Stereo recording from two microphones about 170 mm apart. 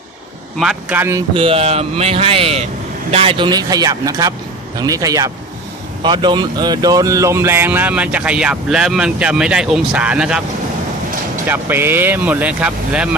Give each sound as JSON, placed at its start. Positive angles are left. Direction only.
{"t": 0.6, "sound": "speech", "side_deg": -5}
{"t": 1.3, "sound": "speech", "side_deg": -30}
{"t": 11.4, "sound": "speech", "side_deg": -10}